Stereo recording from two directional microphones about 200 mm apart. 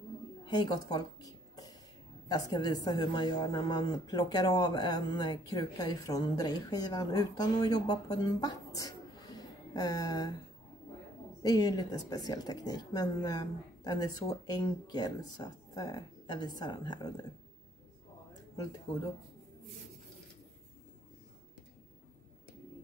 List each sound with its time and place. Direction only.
0.5 s a sound: 20° left (ahead or behind)
2.2 s a woman's voice: 20° left (ahead or behind)
11.4 s a woman's voice: 20° left (ahead or behind)